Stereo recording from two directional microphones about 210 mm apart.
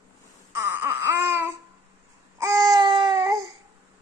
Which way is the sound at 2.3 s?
15° right (ahead or behind).